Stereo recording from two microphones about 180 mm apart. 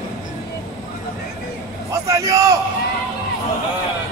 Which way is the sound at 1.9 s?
15° right (ahead or behind).